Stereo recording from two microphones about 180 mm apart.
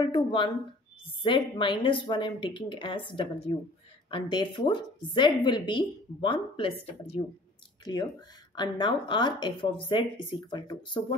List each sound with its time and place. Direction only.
0.0 s a woman's voice: 25° left (ahead or behind)